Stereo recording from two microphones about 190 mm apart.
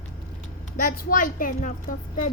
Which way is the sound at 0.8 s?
45° left (ahead or behind).